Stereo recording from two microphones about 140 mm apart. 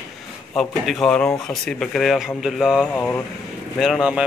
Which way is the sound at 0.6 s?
Centre (ahead or behind).